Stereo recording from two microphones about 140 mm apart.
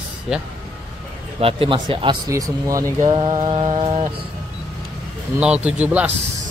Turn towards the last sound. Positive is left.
turn(degrees=-10)  # may be behind; listen again after turning